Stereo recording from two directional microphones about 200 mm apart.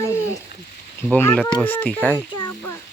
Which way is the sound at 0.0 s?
15° left (ahead or behind).